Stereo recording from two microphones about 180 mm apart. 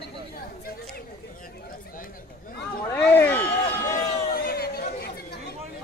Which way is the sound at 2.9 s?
10° left (ahead or behind).